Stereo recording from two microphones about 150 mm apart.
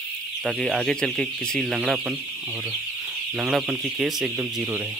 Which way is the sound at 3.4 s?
5° right (ahead or behind).